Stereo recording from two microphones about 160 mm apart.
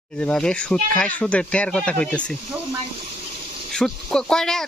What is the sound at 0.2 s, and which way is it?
Speech, 5° left (ahead or behind).